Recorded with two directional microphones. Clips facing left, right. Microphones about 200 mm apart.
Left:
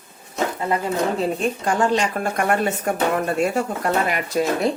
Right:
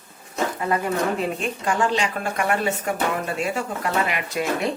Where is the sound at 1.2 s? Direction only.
40° left (ahead or behind).